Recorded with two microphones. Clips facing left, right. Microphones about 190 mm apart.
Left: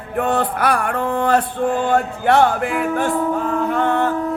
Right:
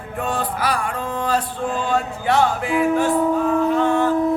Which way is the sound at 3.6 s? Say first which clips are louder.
Right 1 dB; 60° left (ahead or behind).